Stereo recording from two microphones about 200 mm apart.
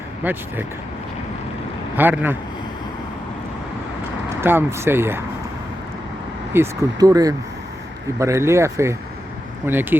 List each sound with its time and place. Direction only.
0.2 s speech: 10° right (ahead or behind)
2.0 s speech: 10° right (ahead or behind)
4.4 s speech: 10° right (ahead or behind)
6.5 s speech: 15° right (ahead or behind)